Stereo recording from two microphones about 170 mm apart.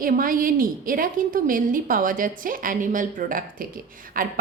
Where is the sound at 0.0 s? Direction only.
55° right (ahead or behind).